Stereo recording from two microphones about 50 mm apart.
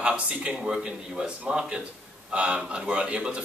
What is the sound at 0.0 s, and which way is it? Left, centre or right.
A man's voice, right.